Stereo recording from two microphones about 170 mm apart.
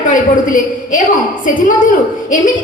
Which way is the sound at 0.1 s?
50° left (ahead or behind).